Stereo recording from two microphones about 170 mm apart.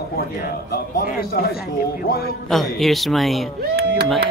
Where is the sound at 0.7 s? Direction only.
60° left (ahead or behind).